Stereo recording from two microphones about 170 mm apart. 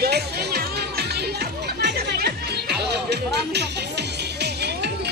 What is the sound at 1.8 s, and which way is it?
Music, 70° right (ahead or behind).